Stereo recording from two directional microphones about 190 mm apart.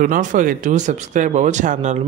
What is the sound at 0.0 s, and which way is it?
Speech, 45° right (ahead or behind).